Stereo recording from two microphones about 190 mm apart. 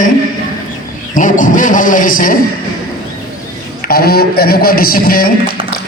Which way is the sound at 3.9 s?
55° left (ahead or behind).